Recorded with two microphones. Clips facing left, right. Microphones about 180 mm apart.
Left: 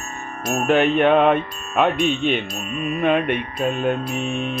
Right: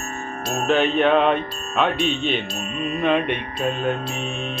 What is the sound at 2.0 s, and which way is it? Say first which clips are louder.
Speech: left 2 dB; 50° left (ahead or behind).